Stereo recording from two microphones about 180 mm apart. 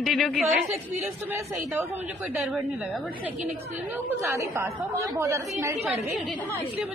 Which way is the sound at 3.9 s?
15° right (ahead or behind).